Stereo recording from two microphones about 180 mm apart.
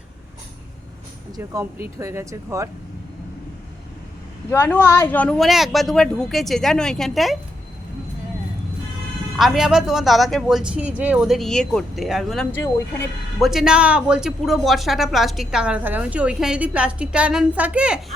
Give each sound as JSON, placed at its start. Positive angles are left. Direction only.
{"t": 2.0, "sound": "speech", "side_deg": -15}
{"t": 4.5, "sound": "speech", "side_deg": 10}
{"t": 9.4, "sound": "speech", "side_deg": 0}